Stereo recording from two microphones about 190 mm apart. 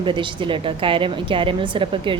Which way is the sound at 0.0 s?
25° right (ahead or behind).